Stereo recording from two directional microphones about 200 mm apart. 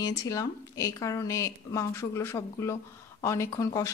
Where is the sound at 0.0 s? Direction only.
15° left (ahead or behind).